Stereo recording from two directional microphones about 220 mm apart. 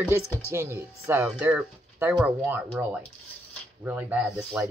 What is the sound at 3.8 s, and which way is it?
Speech, 5° right (ahead or behind).